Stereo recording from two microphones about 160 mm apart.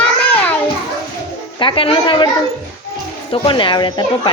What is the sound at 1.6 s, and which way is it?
Speech, 35° left (ahead or behind).